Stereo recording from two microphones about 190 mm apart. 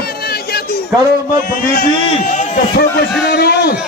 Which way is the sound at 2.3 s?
40° left (ahead or behind).